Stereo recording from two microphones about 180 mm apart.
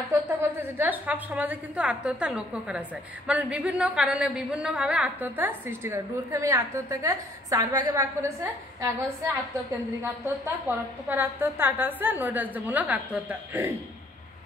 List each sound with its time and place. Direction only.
0.1 s a woman's voice: 15° right (ahead or behind)
11.1 s a woman's voice: 10° right (ahead or behind)